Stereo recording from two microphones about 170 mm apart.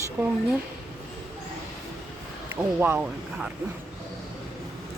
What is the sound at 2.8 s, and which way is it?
Speech, 10° right (ahead or behind).